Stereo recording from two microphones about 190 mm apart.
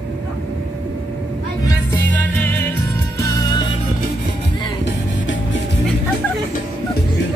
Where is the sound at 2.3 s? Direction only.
10° left (ahead or behind).